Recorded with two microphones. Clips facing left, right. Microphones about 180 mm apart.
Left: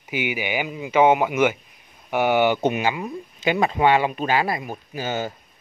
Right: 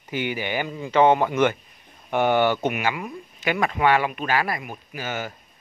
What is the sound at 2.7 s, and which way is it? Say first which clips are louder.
Speech: left 3 dB; 25° left (ahead or behind).